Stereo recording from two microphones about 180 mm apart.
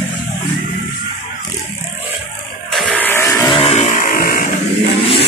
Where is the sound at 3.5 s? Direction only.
30° left (ahead or behind).